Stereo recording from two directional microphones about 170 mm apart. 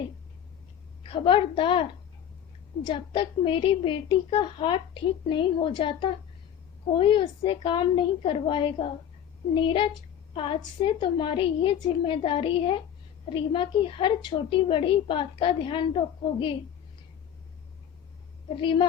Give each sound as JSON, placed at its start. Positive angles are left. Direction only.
{"t": 1.0, "sound": "a woman's voice", "side_deg": 30}
{"t": 18.5, "sound": "a woman's voice", "side_deg": 30}